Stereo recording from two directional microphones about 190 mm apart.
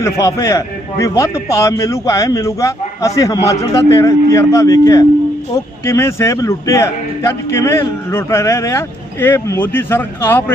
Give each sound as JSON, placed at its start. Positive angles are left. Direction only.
{"t": 0.0, "sound": "a man's voice", "side_deg": 15}